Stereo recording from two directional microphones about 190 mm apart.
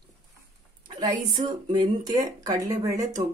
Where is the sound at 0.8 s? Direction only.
25° right (ahead or behind).